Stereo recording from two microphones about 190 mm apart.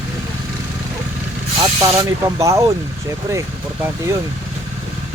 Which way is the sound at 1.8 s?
15° right (ahead or behind).